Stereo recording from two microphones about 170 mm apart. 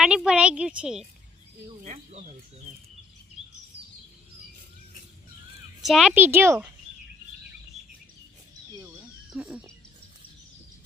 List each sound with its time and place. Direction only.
0.0 s a woman's voice: 5° right (ahead or behind)
1.8 s speech: 45° right (ahead or behind)
5.8 s a woman's voice: centre (ahead or behind)
6.1 s speech: 15° right (ahead or behind)
9.3 s speech: 5° right (ahead or behind)